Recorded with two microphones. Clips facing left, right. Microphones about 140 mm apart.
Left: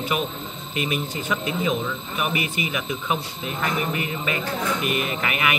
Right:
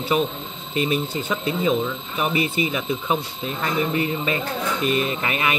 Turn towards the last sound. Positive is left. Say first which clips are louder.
# right 1 dB
turn(degrees=-30)  # may be behind; listen again after turning